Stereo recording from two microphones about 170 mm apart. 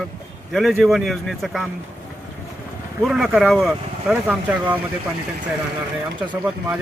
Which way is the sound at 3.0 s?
5° right (ahead or behind).